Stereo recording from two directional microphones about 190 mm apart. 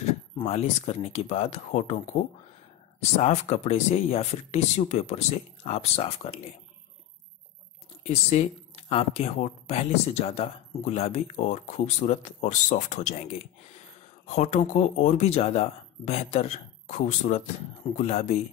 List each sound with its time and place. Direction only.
0.4 s speech: 35° left (ahead or behind)
8.0 s speech: 35° left (ahead or behind)